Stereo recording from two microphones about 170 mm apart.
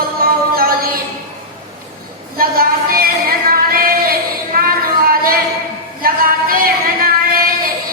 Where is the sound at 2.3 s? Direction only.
60° right (ahead or behind).